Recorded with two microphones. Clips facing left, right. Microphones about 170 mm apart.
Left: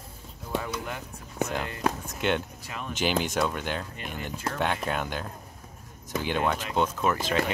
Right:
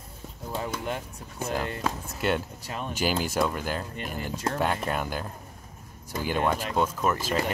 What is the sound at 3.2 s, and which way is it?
Speech, centre (ahead or behind).